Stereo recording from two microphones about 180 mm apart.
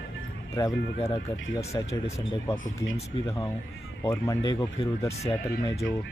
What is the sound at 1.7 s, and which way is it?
Speech, 20° left (ahead or behind).